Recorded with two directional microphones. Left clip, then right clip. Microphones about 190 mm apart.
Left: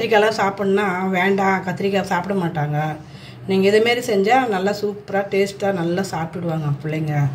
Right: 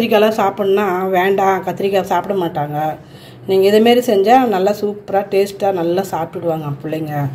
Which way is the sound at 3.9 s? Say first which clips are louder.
Right 6 dB; 5° right (ahead or behind).